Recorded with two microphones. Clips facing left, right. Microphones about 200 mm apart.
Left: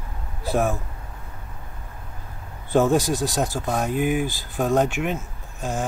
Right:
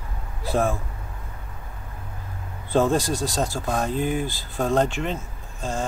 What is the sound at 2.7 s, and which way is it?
Speech, 15° left (ahead or behind).